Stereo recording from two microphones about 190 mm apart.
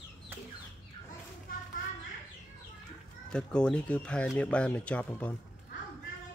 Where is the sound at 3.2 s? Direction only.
5° left (ahead or behind).